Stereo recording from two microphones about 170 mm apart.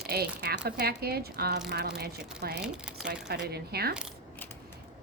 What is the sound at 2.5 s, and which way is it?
Speech, 5° right (ahead or behind).